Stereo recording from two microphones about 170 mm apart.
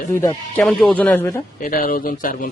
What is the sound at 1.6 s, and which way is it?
Speech, 55° left (ahead or behind).